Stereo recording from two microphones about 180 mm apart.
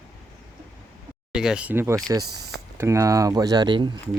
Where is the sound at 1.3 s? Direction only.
5° right (ahead or behind).